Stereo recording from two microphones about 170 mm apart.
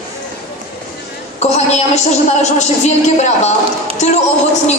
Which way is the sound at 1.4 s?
40° left (ahead or behind).